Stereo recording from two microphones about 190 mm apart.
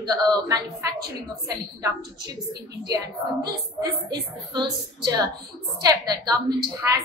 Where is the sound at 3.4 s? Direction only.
20° right (ahead or behind).